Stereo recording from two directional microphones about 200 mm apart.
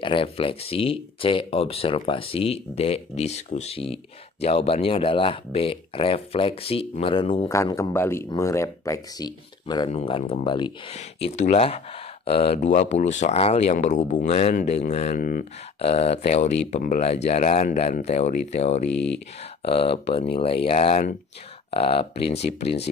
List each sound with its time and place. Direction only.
0.0 s speech: 25° left (ahead or behind)
7.4 s speech: 15° left (ahead or behind); by 15.4 s 45° left (ahead or behind)
15.8 s speech: 30° left (ahead or behind)
18.9 s speech: 60° left (ahead or behind)
19.6 s speech: 30° left (ahead or behind)